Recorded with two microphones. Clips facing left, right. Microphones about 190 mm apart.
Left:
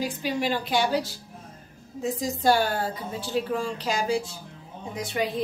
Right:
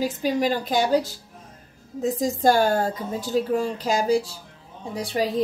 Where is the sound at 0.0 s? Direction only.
40° right (ahead or behind).